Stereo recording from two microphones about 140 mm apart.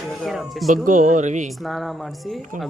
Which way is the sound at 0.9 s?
65° right (ahead or behind).